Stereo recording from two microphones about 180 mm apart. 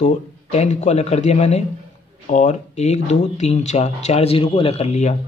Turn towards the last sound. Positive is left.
turn(degrees=35)  # may be behind; listen again after turning